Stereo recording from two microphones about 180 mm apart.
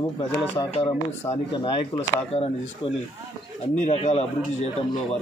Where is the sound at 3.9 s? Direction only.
35° left (ahead or behind).